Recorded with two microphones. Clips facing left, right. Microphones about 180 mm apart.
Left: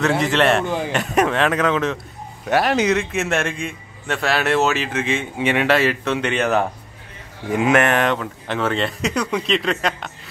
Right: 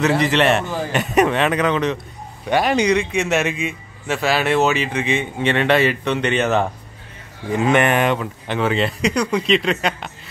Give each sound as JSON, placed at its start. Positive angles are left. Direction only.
{"t": 0.0, "sound": "a man's voice", "side_deg": 0}
{"t": 0.7, "sound": "speech", "side_deg": 20}
{"t": 0.9, "sound": "a man's voice", "side_deg": 0}